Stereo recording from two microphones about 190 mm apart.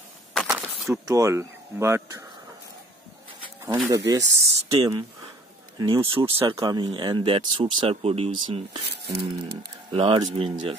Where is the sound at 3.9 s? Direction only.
20° right (ahead or behind).